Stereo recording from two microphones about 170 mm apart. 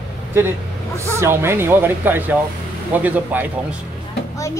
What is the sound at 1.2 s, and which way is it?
Speech, 15° right (ahead or behind).